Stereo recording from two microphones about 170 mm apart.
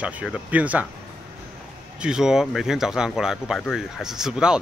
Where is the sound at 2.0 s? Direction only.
5° right (ahead or behind).